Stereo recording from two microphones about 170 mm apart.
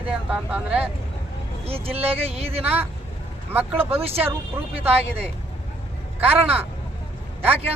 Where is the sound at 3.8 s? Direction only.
35° right (ahead or behind).